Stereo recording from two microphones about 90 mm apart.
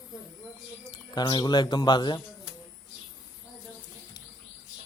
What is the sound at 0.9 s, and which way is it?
Speech, 55° left (ahead or behind).